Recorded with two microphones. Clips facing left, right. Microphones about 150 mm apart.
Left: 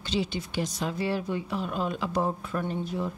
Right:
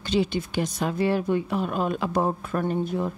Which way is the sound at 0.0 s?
55° right (ahead or behind).